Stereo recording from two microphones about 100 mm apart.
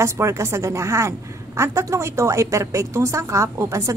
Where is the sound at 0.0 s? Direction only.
30° right (ahead or behind).